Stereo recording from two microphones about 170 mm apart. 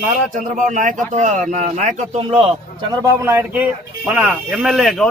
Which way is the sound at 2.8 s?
15° right (ahead or behind).